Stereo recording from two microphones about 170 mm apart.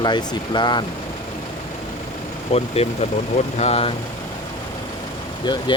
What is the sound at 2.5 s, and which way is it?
Speech, 35° left (ahead or behind).